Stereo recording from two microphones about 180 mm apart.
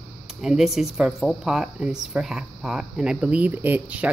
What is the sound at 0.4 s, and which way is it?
Speech, 5° right (ahead or behind).